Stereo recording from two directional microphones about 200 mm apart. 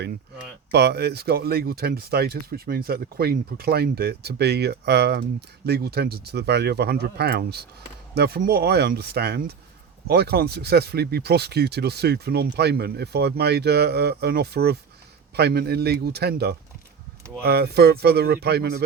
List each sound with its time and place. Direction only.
0.7 s speech: 55° right (ahead or behind)